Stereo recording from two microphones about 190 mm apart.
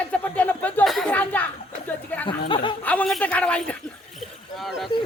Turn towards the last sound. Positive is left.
turn(degrees=0)  # may be behind; listen again after turning